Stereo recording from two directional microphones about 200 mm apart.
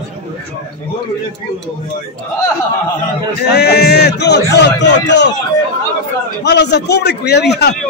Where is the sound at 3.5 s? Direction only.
55° left (ahead or behind).